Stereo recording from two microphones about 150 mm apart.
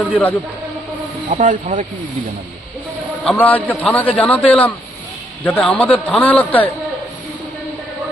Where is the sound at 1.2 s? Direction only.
55° right (ahead or behind).